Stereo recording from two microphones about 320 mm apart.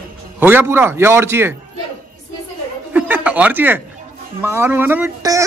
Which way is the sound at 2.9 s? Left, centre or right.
Centre.